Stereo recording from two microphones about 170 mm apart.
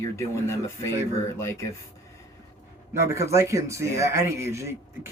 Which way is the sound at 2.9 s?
15° right (ahead or behind).